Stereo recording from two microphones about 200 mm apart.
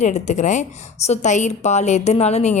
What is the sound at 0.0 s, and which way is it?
A woman's voice, 35° left (ahead or behind).